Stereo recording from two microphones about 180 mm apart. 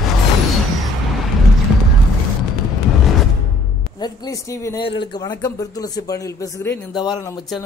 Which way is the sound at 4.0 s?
20° left (ahead or behind).